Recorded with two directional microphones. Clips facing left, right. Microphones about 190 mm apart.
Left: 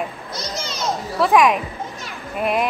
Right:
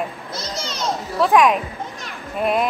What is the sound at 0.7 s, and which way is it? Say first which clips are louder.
Children playing: even; centre (ahead or behind).